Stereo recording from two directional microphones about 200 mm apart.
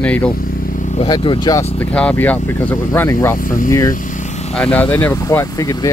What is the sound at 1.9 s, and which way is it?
Speech, 5° left (ahead or behind).